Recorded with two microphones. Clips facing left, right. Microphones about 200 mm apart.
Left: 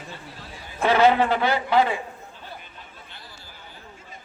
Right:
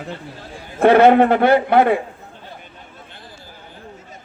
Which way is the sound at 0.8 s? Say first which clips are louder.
Right 8 dB; 55° right (ahead or behind).